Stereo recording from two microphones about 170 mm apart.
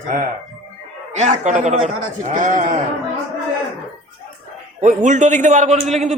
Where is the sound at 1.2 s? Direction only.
45° right (ahead or behind).